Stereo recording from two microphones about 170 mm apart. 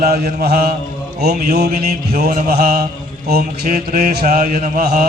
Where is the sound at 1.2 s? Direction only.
70° right (ahead or behind).